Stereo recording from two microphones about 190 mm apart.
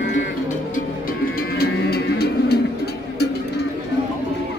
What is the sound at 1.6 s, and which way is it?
Music, 55° left (ahead or behind).